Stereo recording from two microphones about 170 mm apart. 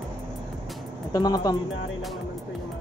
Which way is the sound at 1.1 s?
25° left (ahead or behind).